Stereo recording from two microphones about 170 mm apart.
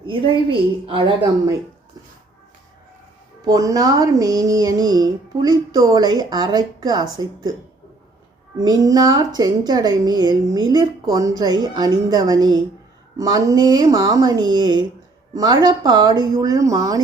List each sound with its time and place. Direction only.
0.0 s speech: 30° right (ahead or behind)
3.4 s speech: 20° right (ahead or behind)
8.5 s speech: 20° right (ahead or behind)